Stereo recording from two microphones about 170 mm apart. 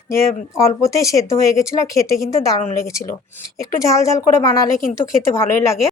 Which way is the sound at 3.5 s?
20° left (ahead or behind).